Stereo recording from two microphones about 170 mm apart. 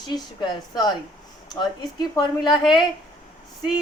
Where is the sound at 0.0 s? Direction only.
25° left (ahead or behind).